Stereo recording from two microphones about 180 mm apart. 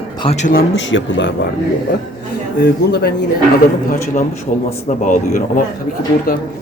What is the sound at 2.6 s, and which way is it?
Speech, 65° left (ahead or behind).